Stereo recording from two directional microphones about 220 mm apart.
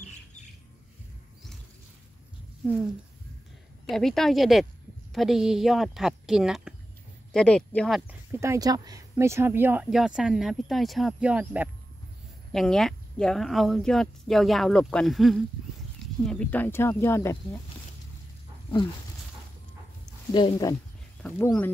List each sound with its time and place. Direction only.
3.8 s speech: centre (ahead or behind)
8.1 s speech: 10° right (ahead or behind); by 17.6 s 10° left (ahead or behind)
20.1 s speech: 20° left (ahead or behind)
21.2 s speech: 5° left (ahead or behind)